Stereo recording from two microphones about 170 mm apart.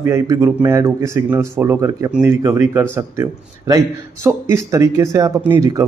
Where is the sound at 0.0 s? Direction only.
15° right (ahead or behind).